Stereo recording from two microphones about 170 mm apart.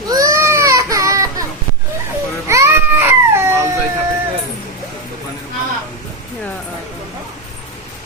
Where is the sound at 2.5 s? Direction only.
15° right (ahead or behind).